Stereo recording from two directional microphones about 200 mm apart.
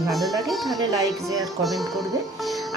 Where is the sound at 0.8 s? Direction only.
15° right (ahead or behind).